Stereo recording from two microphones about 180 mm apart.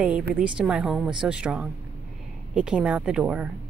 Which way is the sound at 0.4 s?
5° right (ahead or behind).